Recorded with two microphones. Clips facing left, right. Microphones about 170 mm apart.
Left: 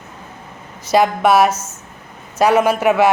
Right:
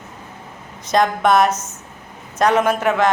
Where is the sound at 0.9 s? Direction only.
5° left (ahead or behind).